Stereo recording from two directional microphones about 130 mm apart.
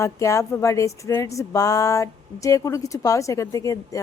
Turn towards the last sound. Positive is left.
turn(degrees=25)  # may be behind; listen again after turning